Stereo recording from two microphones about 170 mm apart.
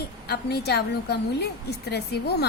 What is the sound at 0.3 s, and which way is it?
A woman's voice, 70° left (ahead or behind).